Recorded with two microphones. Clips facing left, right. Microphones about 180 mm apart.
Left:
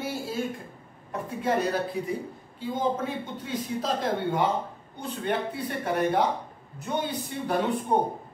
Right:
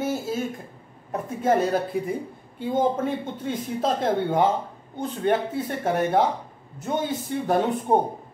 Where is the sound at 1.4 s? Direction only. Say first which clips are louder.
Right 5 dB; 50° right (ahead or behind).